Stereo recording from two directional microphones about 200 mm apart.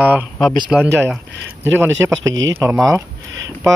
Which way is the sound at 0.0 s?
10° right (ahead or behind).